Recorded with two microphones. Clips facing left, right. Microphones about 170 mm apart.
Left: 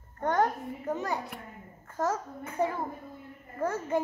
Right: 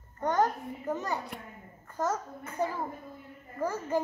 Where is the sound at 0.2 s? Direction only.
5° right (ahead or behind).